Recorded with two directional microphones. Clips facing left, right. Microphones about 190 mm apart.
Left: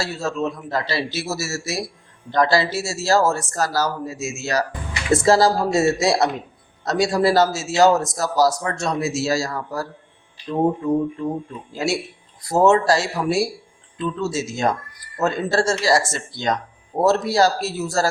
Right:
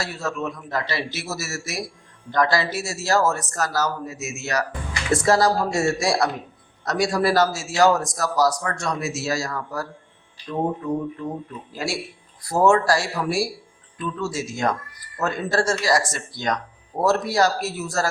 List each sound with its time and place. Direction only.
0.0 s a man's voice: 30° left (ahead or behind)
11.7 s a man's voice: 25° left (ahead or behind)